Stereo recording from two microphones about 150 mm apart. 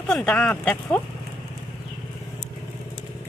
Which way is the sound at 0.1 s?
5° left (ahead or behind).